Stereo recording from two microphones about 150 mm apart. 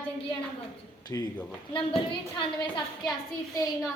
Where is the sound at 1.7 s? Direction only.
35° left (ahead or behind).